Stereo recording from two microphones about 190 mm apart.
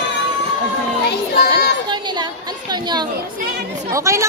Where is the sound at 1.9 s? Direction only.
25° right (ahead or behind).